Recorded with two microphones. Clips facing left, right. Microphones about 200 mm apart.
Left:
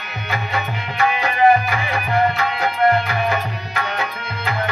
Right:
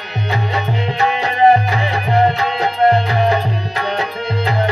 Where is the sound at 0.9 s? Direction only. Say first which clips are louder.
Even; 25° right (ahead or behind).